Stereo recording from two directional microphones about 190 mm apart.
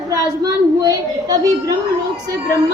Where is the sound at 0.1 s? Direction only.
20° right (ahead or behind).